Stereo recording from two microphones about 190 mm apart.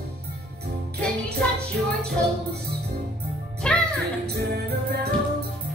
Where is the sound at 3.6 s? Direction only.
5° left (ahead or behind).